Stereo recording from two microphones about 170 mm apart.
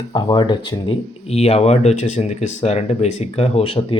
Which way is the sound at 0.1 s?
25° left (ahead or behind).